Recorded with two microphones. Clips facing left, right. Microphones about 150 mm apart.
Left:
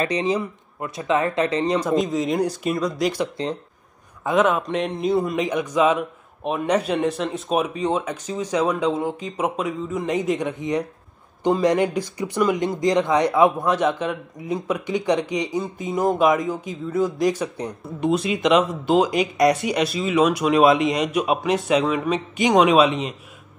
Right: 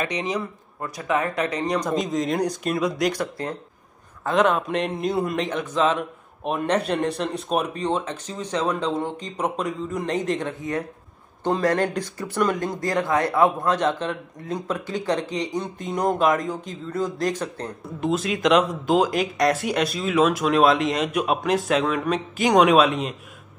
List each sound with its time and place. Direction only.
0.0 s speech: 30° left (ahead or behind)
1.8 s a man's voice: centre (ahead or behind)
15.6 s speech: centre (ahead or behind)
17.8 s a man's voice: centre (ahead or behind)